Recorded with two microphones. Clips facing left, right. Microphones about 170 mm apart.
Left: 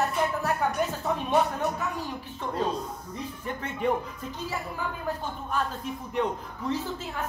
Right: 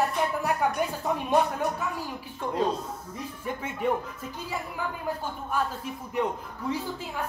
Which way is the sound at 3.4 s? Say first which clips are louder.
Right 1 dB; 10° right (ahead or behind).